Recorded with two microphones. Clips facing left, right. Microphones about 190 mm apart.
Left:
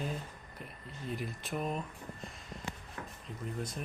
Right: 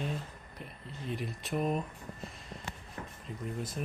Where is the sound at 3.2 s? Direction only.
5° right (ahead or behind).